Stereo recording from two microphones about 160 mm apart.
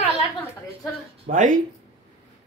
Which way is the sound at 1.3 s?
55° right (ahead or behind).